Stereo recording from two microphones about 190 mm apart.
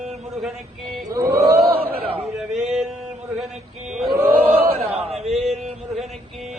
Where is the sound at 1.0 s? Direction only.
15° right (ahead or behind).